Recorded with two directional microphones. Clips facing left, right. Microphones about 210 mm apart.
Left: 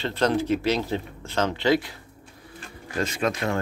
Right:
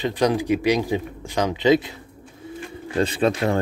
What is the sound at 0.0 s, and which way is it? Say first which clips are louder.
Speech: right 3 dB; 15° right (ahead or behind).